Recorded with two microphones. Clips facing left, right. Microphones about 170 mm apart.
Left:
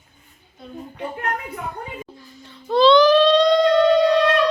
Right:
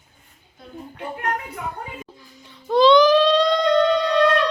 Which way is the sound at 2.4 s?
15° right (ahead or behind).